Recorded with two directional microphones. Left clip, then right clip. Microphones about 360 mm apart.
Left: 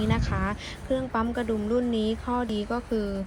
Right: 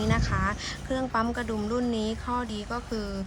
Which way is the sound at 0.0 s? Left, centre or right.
Centre.